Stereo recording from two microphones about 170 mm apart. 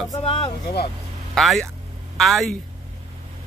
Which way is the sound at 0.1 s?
30° left (ahead or behind).